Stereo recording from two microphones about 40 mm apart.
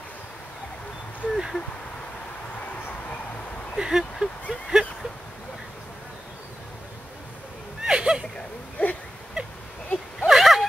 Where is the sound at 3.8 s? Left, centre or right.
Centre.